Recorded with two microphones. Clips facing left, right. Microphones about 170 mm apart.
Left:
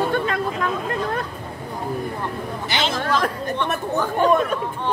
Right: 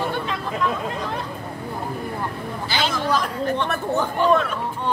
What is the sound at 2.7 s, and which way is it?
Chatter, 25° left (ahead or behind).